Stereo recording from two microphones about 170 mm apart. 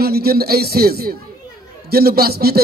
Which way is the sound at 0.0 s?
65° right (ahead or behind).